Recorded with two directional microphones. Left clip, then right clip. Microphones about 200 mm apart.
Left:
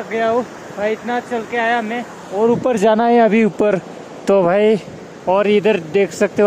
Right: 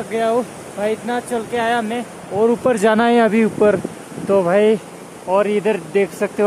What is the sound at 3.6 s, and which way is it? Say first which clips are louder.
Speech: right 1 dB; 25° left (ahead or behind).